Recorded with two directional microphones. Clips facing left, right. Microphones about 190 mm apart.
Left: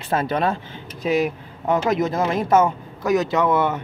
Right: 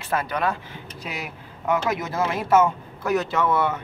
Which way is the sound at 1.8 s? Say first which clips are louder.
Left 5 dB; 20° left (ahead or behind).